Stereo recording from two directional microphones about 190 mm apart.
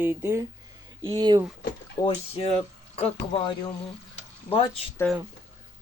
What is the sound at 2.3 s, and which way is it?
Speech, 30° left (ahead or behind).